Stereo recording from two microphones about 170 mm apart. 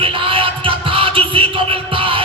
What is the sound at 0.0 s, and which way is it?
Music, 30° right (ahead or behind).